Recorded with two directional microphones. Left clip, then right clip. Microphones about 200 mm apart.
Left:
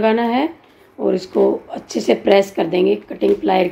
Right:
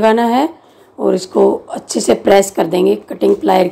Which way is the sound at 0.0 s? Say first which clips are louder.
Right 5 dB; 15° right (ahead or behind).